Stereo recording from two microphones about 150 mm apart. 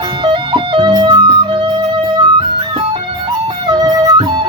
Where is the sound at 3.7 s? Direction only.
25° right (ahead or behind).